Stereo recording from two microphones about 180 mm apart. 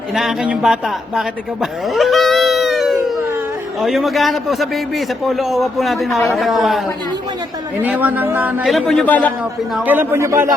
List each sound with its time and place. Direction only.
0.1 s a man's voice: centre (ahead or behind)
1.9 s cat: centre (ahead or behind)
3.8 s a man's voice: centre (ahead or behind)
9.4 s a man's voice: 10° right (ahead or behind)